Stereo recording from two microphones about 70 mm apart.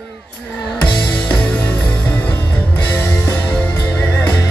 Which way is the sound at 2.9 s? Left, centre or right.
Left.